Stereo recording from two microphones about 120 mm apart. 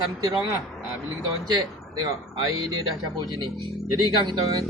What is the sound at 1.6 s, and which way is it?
Speech, 35° right (ahead or behind).